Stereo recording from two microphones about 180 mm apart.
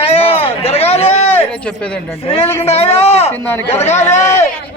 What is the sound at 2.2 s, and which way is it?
Speech, 30° left (ahead or behind).